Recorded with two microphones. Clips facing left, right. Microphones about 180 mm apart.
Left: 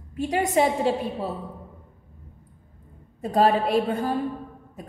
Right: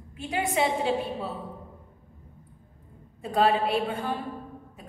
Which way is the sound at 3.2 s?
40° left (ahead or behind).